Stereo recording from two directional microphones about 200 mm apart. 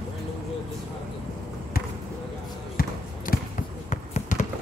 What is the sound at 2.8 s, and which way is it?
Basketball bounce, 45° left (ahead or behind).